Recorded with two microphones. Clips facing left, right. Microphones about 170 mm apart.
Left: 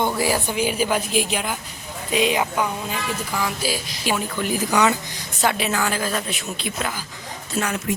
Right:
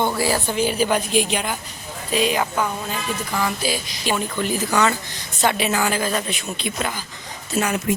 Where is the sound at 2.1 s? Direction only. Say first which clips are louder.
Even; 20° left (ahead or behind).